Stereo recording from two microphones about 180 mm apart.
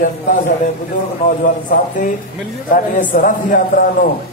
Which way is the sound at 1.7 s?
45° left (ahead or behind).